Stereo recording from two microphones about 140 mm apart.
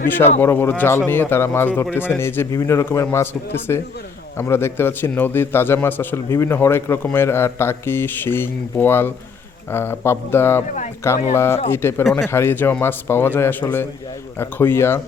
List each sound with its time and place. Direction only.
0.3 s a man's voice: 15° left (ahead or behind)